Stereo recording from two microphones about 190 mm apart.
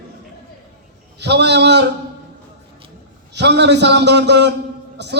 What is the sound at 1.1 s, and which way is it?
Speech, 65° right (ahead or behind).